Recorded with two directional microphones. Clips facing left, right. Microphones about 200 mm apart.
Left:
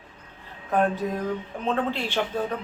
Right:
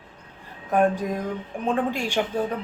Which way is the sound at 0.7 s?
15° right (ahead or behind).